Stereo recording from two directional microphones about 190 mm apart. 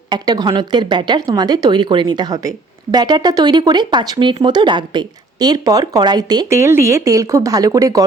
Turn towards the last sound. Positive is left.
turn(degrees=-20)  # may be behind; listen again after turning